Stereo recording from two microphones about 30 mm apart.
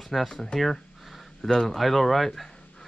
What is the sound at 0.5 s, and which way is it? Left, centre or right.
Speech, left.